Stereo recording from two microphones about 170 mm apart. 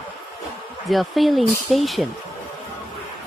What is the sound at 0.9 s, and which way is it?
Speech, centre (ahead or behind).